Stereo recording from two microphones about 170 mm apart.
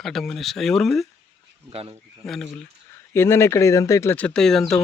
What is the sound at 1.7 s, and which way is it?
Speech, 35° right (ahead or behind).